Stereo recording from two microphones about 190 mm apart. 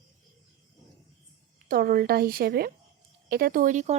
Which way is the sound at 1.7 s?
50° right (ahead or behind).